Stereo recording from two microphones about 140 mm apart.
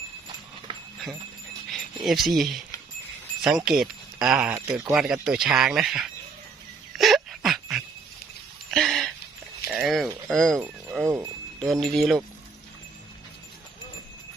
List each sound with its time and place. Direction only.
1.7 s speech: centre (ahead or behind)
4.5 s speech: 20° right (ahead or behind)
4.8 s speech: 5° right (ahead or behind)
6.9 s a sound: centre (ahead or behind)
8.7 s music: centre (ahead or behind)
9.8 s speech: centre (ahead or behind)
11.0 s speech: 20° right (ahead or behind)
11.6 s speech: 5° left (ahead or behind)